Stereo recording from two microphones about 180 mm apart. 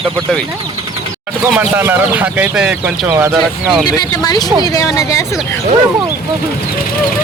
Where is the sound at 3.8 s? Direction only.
20° left (ahead or behind).